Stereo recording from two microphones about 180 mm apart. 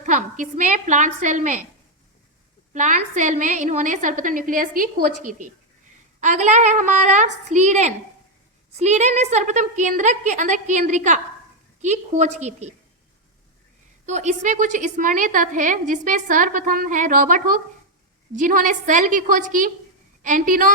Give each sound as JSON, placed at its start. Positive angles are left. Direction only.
{"t": 0.0, "sound": "a woman's voice", "side_deg": -45}
{"t": 2.7, "sound": "a woman's voice", "side_deg": -45}
{"t": 14.1, "sound": "a woman's voice", "side_deg": -40}